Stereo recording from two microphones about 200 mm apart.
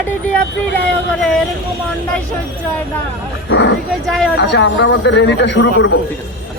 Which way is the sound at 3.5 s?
65° left (ahead or behind).